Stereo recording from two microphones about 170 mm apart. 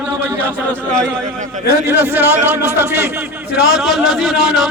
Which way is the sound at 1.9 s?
10° right (ahead or behind).